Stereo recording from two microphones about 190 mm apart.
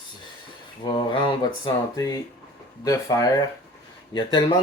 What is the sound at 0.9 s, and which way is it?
Speech, 25° left (ahead or behind).